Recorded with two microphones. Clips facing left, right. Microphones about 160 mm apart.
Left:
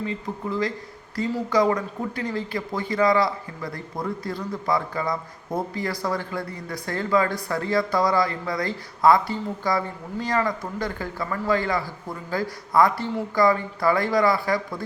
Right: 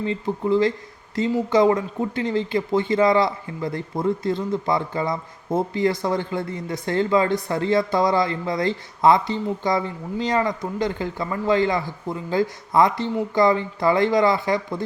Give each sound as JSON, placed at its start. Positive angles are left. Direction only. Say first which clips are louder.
{"t": 0.0, "sound": "speech", "louder": "right 5 dB", "side_deg": -30}